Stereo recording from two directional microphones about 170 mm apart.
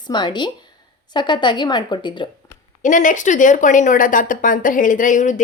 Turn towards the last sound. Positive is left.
turn(degrees=50)  # may be behind; listen again after turning